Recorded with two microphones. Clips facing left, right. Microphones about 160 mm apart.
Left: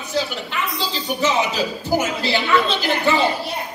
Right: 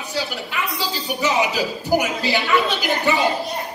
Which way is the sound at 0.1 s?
10° right (ahead or behind).